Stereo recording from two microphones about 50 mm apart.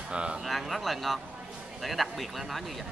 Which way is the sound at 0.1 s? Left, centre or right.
Right.